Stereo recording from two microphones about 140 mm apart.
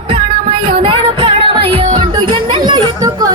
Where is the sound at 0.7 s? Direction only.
35° right (ahead or behind).